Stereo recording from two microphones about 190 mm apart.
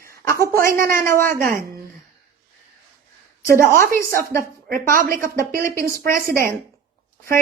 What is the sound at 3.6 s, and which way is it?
A woman's voice, 45° right (ahead or behind).